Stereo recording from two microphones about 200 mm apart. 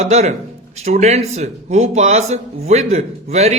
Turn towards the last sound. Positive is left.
turn(degrees=-35)  # may be behind; listen again after turning